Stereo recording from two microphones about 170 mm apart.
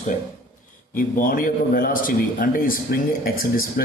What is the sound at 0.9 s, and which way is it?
Speech, 55° left (ahead or behind).